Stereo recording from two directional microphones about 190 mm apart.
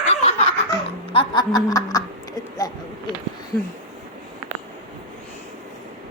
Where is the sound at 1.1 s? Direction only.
25° left (ahead or behind).